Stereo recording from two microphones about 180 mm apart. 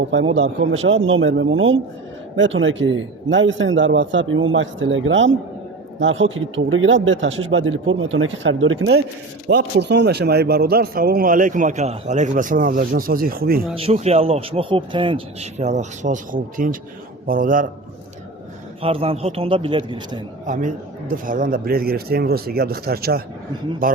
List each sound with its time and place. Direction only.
0.3 s a man's voice: 90° right
9.5 s a man's voice: 75° right (ahead or behind); by 13.6 s 55° right (ahead or behind)
13.7 s a man's voice: 35° right (ahead or behind)
18.8 s speech: 30° right (ahead or behind)
20.5 s a man's voice: 45° right (ahead or behind)